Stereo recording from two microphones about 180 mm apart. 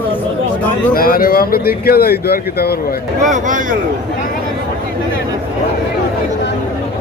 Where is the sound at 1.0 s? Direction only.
55° left (ahead or behind).